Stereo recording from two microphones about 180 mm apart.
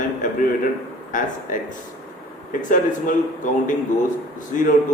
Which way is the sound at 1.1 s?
45° left (ahead or behind).